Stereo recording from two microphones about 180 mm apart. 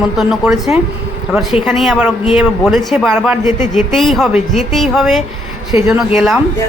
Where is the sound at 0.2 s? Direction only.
5° right (ahead or behind).